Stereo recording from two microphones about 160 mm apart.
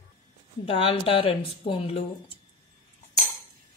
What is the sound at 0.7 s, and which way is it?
Speech, 35° left (ahead or behind).